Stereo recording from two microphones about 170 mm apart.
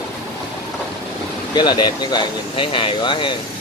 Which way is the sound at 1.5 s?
25° left (ahead or behind).